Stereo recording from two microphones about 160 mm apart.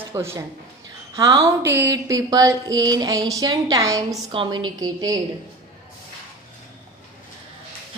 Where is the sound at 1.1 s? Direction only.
20° right (ahead or behind).